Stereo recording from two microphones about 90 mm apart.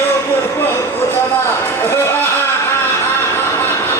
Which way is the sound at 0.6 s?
25° left (ahead or behind).